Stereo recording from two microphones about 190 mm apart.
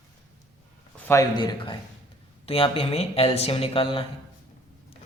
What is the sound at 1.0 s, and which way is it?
Speech, 15° left (ahead or behind).